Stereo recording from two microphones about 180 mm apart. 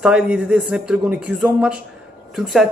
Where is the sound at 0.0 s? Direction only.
5° right (ahead or behind).